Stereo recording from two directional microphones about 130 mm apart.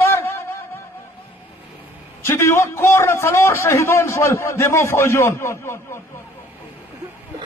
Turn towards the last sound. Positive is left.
turn(degrees=20)  # may be behind; listen again after turning